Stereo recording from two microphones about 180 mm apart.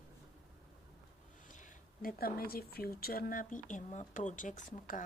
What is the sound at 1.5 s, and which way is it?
Speech, 45° left (ahead or behind).